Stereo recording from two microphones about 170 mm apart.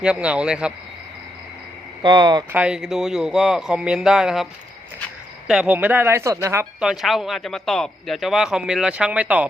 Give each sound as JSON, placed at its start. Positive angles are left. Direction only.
{"t": 0.0, "sound": "speech", "side_deg": -5}
{"t": 2.0, "sound": "speech", "side_deg": -25}
{"t": 2.5, "sound": "speech", "side_deg": -5}
{"t": 5.5, "sound": "speech", "side_deg": -5}